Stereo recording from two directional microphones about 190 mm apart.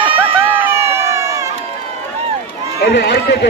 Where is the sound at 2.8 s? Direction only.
65° left (ahead or behind).